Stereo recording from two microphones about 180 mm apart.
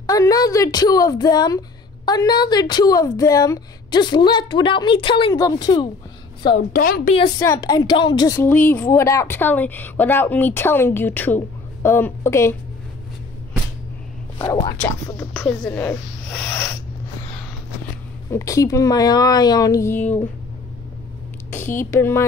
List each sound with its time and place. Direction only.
0.0 s a woman's voice: 20° left (ahead or behind)
6.7 s a woman's voice: 50° left (ahead or behind)
7.3 s a woman's voice: 20° left (ahead or behind)
8.4 s speech: 10° left (ahead or behind)
14.4 s a woman's voice: 20° left (ahead or behind)
18.3 s a woman's voice: 20° left (ahead or behind)
21.5 s speech: 10° left (ahead or behind)